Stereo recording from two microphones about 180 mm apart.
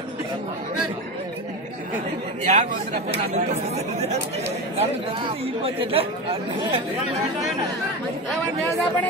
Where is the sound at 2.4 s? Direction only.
40° right (ahead or behind).